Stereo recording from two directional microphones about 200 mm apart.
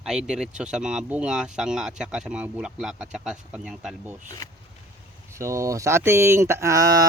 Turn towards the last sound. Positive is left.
turn(degrees=-15)  # may be behind; listen again after turning